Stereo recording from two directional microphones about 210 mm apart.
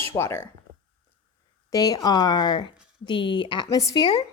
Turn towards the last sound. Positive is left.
turn(degrees=20)  # may be behind; listen again after turning